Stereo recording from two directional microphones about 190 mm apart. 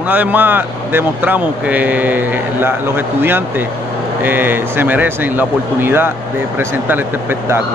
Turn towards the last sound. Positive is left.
turn(degrees=-10)  # may be behind; listen again after turning